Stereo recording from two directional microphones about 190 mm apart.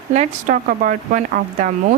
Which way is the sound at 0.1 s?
40° right (ahead or behind).